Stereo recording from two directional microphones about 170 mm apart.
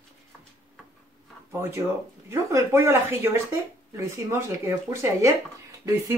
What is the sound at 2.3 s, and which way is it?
Speech, 15° right (ahead or behind).